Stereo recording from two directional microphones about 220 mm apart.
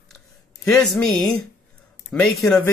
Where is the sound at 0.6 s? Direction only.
Centre (ahead or behind).